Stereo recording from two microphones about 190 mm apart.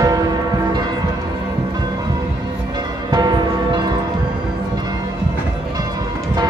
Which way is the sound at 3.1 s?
20° right (ahead or behind).